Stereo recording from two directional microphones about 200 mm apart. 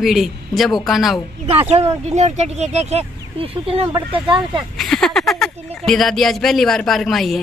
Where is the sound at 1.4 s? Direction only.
30° right (ahead or behind).